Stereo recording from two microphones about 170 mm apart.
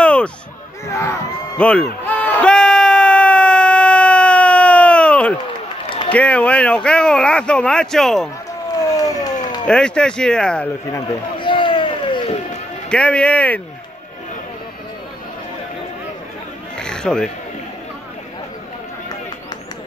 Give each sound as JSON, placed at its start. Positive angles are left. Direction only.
{"t": 0.0, "sound": "a sound", "side_deg": 5}
{"t": 5.9, "sound": "run", "side_deg": 30}
{"t": 6.1, "sound": "speech", "side_deg": 10}
{"t": 8.8, "sound": "vehicle", "side_deg": 20}
{"t": 9.7, "sound": "speech", "side_deg": 5}
{"t": 10.9, "sound": "run", "side_deg": 25}
{"t": 12.9, "sound": "speech", "side_deg": 5}
{"t": 16.7, "sound": "a sound", "side_deg": 5}